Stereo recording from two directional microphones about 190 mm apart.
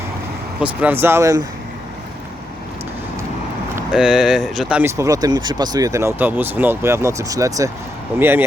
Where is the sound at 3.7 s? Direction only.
5° right (ahead or behind).